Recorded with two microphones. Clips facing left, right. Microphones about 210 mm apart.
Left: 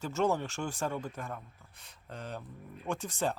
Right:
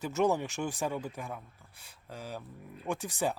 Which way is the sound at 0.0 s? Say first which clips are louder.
Right 2 dB; 15° right (ahead or behind).